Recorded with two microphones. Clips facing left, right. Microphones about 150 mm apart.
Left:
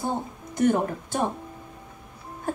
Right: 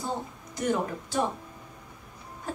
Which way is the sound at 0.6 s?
50° left (ahead or behind).